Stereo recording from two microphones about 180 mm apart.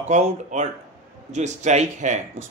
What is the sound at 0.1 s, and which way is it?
A man's voice, 40° right (ahead or behind).